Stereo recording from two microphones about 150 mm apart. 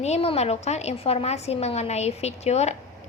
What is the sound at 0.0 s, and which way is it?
A woman's voice, 45° left (ahead or behind).